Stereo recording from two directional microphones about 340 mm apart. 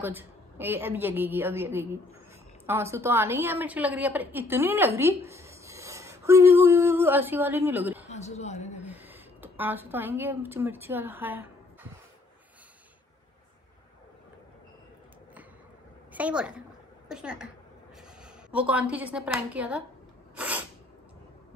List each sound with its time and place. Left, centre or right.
0.0 s a woman's voice: centre
8.1 s a man's voice: centre
8.8 s a woman's voice: centre
16.1 s a woman's voice: centre
20.3 s sneeze: centre